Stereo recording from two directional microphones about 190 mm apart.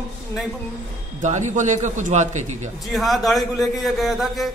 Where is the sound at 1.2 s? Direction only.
40° right (ahead or behind).